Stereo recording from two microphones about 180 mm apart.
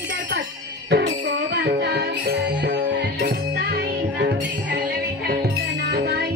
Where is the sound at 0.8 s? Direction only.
70° right (ahead or behind).